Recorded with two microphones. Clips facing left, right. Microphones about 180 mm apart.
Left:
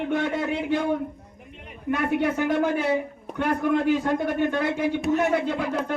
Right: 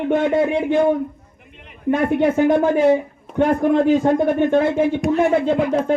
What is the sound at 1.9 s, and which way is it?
A man's voice, 50° right (ahead or behind).